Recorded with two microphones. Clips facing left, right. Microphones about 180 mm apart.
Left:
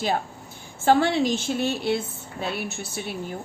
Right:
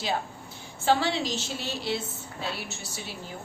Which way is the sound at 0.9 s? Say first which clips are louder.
Left 6 dB; 55° left (ahead or behind).